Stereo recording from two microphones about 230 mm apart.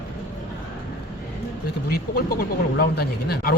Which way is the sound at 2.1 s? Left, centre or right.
Left.